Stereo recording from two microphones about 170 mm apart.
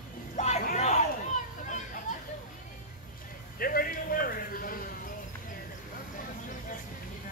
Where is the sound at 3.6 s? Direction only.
60° left (ahead or behind).